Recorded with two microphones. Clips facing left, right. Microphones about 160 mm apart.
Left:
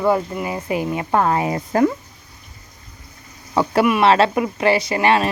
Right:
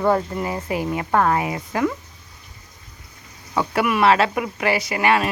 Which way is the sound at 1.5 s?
35° left (ahead or behind).